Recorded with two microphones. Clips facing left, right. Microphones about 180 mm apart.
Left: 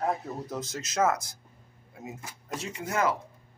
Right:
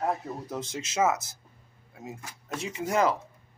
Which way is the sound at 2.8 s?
20° right (ahead or behind).